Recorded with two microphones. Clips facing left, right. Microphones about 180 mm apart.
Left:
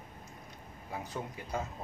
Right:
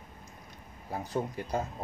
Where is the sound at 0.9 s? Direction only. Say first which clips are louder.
Right 7 dB; 35° right (ahead or behind).